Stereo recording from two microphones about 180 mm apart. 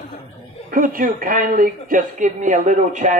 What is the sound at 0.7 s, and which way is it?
Speech, 50° right (ahead or behind).